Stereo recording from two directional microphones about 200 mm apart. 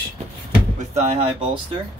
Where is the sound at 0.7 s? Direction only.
35° right (ahead or behind).